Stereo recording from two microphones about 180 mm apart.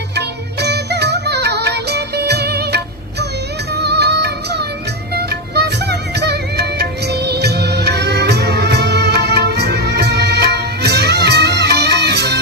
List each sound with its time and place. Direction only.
0.1 s music: 70° right (ahead or behind)